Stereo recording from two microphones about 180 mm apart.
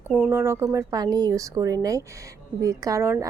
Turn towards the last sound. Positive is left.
turn(degrees=-15)  # may be behind; listen again after turning